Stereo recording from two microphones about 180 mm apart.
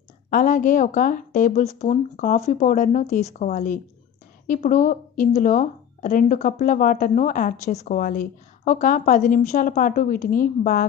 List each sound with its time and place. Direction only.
0.3 s speech: 50° left (ahead or behind)
3.5 s speech: 50° left (ahead or behind)